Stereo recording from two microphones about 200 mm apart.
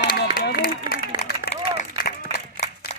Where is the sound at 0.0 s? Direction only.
50° left (ahead or behind).